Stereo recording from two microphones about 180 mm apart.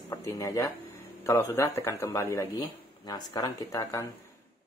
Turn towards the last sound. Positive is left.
turn(degrees=20)  # may be behind; listen again after turning